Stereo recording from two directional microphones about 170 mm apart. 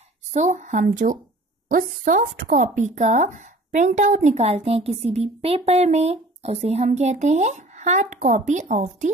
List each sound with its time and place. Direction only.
0.3 s a woman's voice: 45° right (ahead or behind)